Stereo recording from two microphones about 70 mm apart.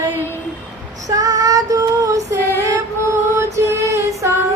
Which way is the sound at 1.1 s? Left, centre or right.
Right.